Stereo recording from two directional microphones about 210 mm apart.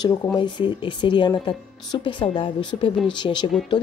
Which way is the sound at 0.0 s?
20° left (ahead or behind).